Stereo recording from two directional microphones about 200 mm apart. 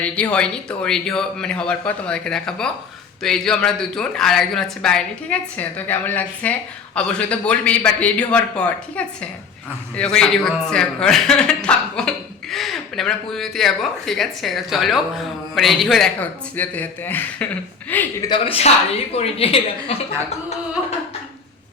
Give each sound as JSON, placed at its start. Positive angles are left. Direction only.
{"t": 0.0, "sound": "a man's voice", "side_deg": 5}
{"t": 18.3, "sound": "speech", "side_deg": 30}